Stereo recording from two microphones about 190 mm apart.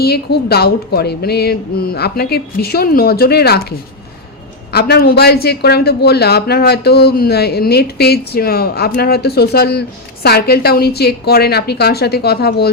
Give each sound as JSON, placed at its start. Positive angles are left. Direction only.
{"t": 0.0, "sound": "a man's voice", "side_deg": 55}